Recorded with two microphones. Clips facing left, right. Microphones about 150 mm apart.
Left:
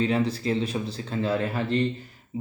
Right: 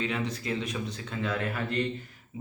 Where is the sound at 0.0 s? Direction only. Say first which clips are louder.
Left 7 dB; 35° left (ahead or behind).